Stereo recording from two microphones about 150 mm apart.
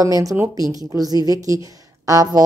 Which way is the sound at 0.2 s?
20° right (ahead or behind).